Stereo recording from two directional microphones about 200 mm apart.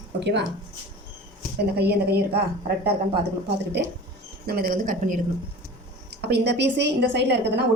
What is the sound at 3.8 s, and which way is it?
A woman's voice, 55° right (ahead or behind).